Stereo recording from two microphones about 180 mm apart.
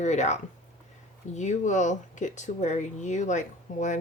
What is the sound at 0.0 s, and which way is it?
A woman's voice, 40° left (ahead or behind).